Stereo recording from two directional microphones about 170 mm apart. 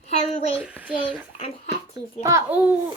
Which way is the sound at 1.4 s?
35° left (ahead or behind).